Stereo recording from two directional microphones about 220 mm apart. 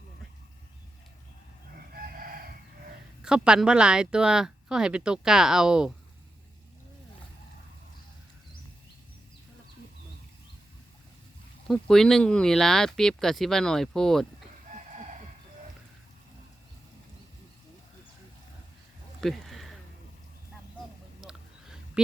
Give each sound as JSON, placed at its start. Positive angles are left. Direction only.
{"t": 1.9, "sound": "chicken", "side_deg": -40}
{"t": 3.2, "sound": "speech", "side_deg": -5}
{"t": 11.7, "sound": "speech", "side_deg": 0}
{"t": 14.7, "sound": "chicken", "side_deg": -35}
{"t": 19.2, "sound": "a sound", "side_deg": 0}
{"t": 21.2, "sound": "a sound", "side_deg": -5}